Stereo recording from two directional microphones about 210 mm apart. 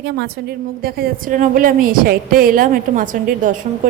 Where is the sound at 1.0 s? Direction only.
40° right (ahead or behind).